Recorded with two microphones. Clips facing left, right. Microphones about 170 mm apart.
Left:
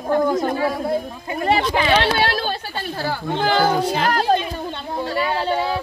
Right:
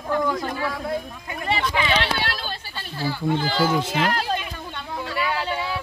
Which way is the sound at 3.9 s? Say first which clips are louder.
Left 4 dB; 45° left (ahead or behind).